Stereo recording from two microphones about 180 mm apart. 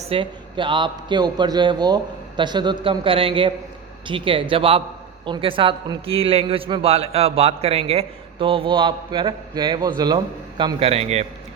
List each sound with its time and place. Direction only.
0.1 s a man's voice: 25° right (ahead or behind)